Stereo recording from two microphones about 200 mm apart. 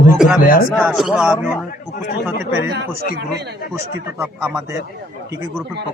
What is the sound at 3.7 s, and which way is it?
Speech, 15° right (ahead or behind).